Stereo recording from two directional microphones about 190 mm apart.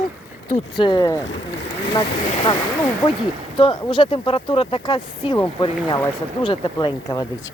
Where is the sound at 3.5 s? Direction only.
25° left (ahead or behind).